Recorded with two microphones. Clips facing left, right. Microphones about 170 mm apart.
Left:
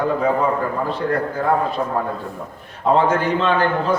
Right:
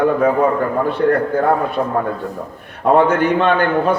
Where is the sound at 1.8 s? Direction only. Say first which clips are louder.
Right 4 dB; 55° right (ahead or behind).